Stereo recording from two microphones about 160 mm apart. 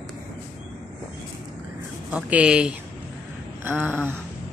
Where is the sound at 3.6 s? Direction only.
15° right (ahead or behind).